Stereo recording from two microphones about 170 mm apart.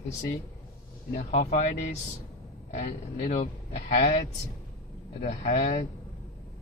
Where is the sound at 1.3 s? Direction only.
40° left (ahead or behind).